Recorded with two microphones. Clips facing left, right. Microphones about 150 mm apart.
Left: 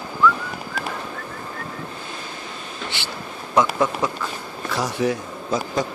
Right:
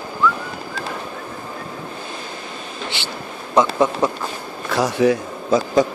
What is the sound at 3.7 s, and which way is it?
Speech, 25° right (ahead or behind).